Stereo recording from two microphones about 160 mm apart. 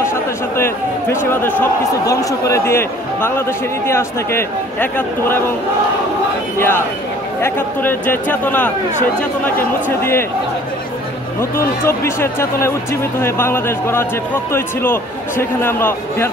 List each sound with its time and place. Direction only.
0.6 s a sound: 15° left (ahead or behind)
2.0 s speech: 20° left (ahead or behind)
7.4 s speech: 15° left (ahead or behind)
9.8 s speech: 15° left (ahead or behind)
11.8 s speech: 15° left (ahead or behind)